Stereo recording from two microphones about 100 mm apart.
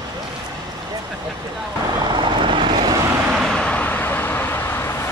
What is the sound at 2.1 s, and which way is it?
Vehicle, 50° right (ahead or behind).